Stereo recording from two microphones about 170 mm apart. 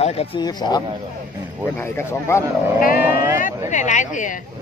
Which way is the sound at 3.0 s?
10° right (ahead or behind).